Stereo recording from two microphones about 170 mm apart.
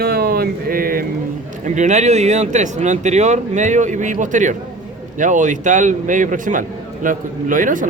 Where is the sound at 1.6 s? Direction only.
45° right (ahead or behind).